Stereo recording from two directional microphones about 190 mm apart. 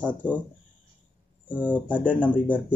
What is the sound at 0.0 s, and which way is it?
Speech, 10° left (ahead or behind).